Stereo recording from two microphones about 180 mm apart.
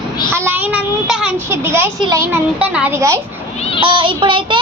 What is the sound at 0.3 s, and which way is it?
Child singing, 10° right (ahead or behind).